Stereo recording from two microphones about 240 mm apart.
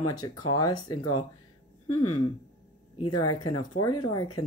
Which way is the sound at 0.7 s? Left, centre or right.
Left.